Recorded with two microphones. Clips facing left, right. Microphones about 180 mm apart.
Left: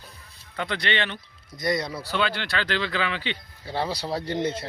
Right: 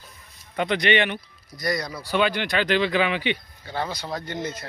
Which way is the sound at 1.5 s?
25° left (ahead or behind).